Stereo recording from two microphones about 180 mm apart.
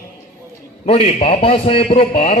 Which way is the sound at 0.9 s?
30° left (ahead or behind).